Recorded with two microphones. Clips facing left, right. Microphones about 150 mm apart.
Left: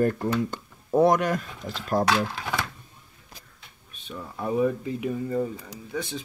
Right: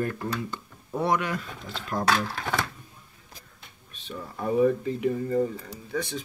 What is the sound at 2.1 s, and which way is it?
Speech, 20° left (ahead or behind).